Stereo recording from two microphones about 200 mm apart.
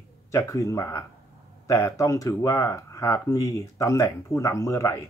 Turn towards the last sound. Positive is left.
turn(degrees=15)  # may be behind; listen again after turning